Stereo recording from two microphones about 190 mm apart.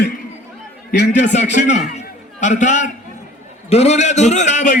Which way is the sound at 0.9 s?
45° left (ahead or behind).